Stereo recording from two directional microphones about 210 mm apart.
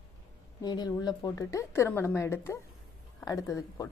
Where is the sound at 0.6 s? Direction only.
20° left (ahead or behind).